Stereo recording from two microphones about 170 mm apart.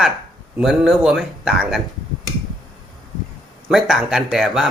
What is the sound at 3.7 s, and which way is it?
Speech, centre (ahead or behind).